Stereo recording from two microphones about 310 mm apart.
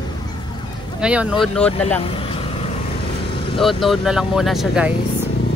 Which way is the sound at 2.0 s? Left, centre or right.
Centre.